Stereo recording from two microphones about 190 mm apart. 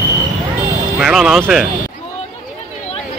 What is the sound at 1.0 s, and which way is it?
Speech, 5° right (ahead or behind).